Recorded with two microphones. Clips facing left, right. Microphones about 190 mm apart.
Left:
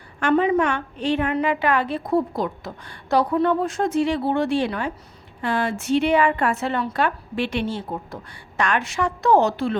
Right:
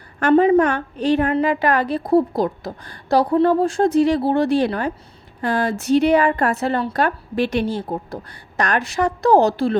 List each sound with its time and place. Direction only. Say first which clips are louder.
0.2 s a woman's voice: right 5 dB; 40° right (ahead or behind)